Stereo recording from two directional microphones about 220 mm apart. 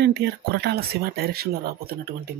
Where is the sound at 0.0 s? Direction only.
50° right (ahead or behind).